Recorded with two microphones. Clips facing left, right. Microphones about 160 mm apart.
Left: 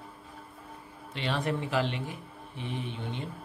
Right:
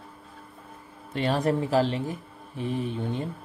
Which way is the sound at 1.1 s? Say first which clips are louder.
Right 6 dB; 45° right (ahead or behind).